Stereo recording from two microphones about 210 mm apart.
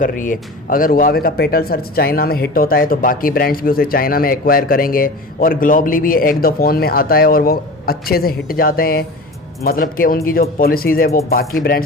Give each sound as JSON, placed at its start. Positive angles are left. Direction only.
{"t": 0.0, "sound": "speech", "side_deg": 40}